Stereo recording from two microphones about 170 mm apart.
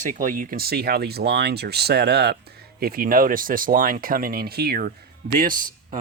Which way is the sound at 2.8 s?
60° right (ahead or behind).